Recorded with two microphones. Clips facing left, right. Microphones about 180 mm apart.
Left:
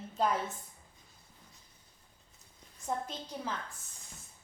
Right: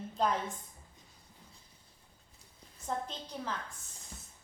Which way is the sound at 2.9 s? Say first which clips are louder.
Left 1 dB; 10° left (ahead or behind).